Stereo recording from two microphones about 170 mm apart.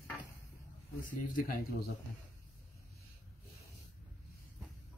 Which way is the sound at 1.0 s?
55° left (ahead or behind).